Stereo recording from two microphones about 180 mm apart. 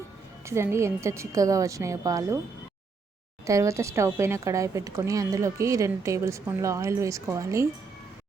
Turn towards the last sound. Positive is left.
turn(degrees=-15)  # may be behind; listen again after turning